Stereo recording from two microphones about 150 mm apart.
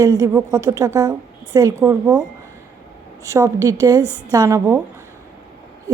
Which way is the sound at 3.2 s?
20° right (ahead or behind).